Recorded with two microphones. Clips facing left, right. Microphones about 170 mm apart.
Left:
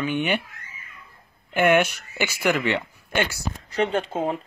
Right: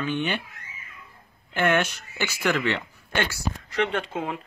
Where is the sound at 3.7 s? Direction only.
35° left (ahead or behind).